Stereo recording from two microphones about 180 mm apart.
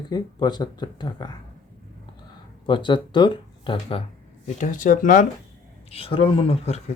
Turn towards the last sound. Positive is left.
turn(degrees=35)  # may be behind; listen again after turning